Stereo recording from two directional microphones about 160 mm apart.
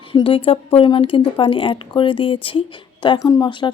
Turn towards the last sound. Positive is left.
turn(degrees=25)  # may be behind; listen again after turning